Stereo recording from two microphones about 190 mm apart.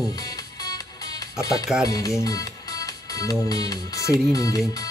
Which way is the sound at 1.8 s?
20° left (ahead or behind).